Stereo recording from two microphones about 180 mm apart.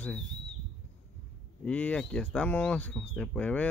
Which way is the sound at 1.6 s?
5° left (ahead or behind).